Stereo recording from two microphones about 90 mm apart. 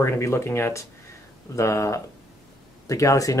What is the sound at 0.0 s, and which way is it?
Speech, 30° left (ahead or behind).